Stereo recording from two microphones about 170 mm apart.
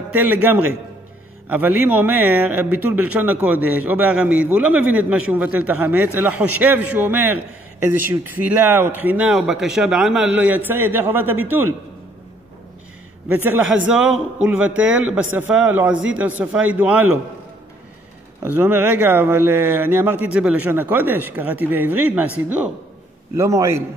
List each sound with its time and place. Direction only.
0.1 s speech: 10° right (ahead or behind)
13.3 s speech: 10° right (ahead or behind)
18.4 s speech: 10° right (ahead or behind)